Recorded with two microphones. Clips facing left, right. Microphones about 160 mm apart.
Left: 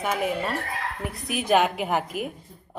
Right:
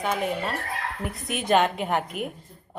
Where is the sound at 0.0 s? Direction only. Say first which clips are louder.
Left 1 dB; 5° left (ahead or behind).